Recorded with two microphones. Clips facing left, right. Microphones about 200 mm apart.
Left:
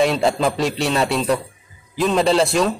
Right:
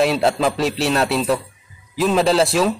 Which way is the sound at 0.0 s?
Centre (ahead or behind).